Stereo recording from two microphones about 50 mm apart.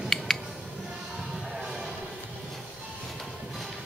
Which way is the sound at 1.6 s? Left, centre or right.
Centre.